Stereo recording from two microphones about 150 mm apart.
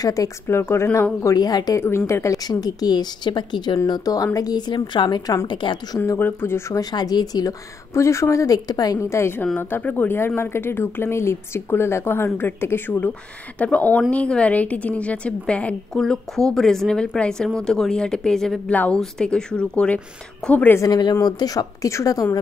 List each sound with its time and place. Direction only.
0.0 s a woman's voice: 25° left (ahead or behind)
5.9 s a woman's voice: 15° left (ahead or behind)
20.9 s a woman's voice: 25° left (ahead or behind)